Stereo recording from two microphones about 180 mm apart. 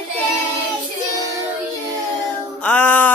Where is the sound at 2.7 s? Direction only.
5° left (ahead or behind).